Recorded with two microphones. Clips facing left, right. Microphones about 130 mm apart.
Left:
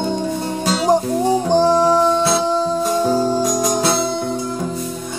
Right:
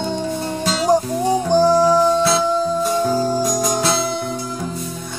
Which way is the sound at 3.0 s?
25° left (ahead or behind).